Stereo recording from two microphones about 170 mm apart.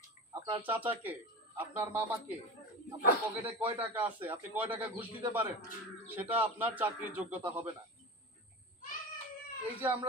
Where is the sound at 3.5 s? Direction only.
10° right (ahead or behind).